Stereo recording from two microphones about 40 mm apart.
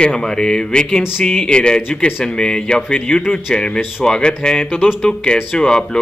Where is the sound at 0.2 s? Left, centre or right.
Centre.